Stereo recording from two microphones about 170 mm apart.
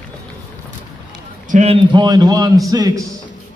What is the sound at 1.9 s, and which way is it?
A man's voice, 25° right (ahead or behind).